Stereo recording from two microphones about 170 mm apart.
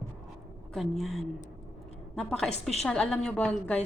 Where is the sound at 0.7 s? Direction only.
Centre (ahead or behind).